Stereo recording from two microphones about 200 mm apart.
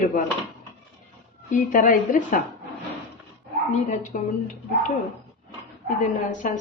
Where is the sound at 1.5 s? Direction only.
40° left (ahead or behind).